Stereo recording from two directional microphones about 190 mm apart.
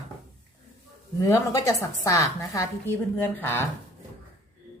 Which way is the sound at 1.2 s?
15° left (ahead or behind).